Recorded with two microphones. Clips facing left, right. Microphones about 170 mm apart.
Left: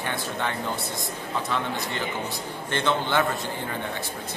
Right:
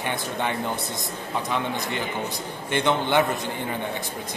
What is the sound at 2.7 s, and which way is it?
Speech, 15° right (ahead or behind).